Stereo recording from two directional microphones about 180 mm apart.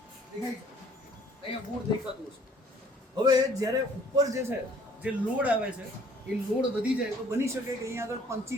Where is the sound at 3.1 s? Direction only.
20° right (ahead or behind).